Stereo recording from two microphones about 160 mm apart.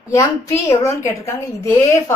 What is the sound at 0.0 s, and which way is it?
A woman's voice, 20° left (ahead or behind).